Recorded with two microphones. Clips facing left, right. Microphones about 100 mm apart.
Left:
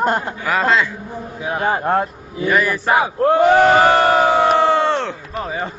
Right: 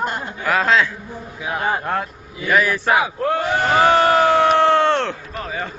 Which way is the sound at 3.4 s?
75° left (ahead or behind).